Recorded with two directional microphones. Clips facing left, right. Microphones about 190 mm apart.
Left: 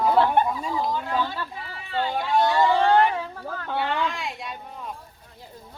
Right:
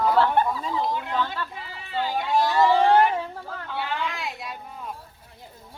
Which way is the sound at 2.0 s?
Centre (ahead or behind).